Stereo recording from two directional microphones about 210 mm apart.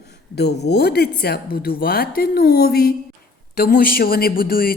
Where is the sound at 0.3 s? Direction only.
50° left (ahead or behind).